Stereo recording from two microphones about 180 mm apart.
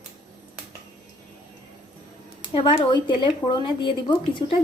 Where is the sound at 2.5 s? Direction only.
25° left (ahead or behind).